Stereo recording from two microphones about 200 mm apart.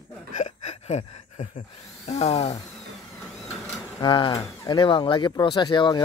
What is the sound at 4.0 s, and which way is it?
Speech, 25° left (ahead or behind).